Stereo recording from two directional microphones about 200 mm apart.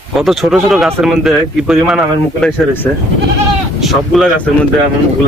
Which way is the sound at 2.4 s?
10° left (ahead or behind).